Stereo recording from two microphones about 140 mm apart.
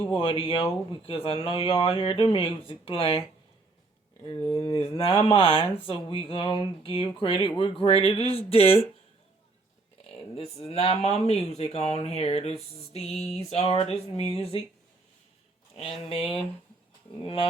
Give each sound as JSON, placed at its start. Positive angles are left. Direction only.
{"t": 0.1, "sound": "speech", "side_deg": 40}
{"t": 4.4, "sound": "speech", "side_deg": 40}
{"t": 10.3, "sound": "speech", "side_deg": 45}
{"t": 15.7, "sound": "speech", "side_deg": 40}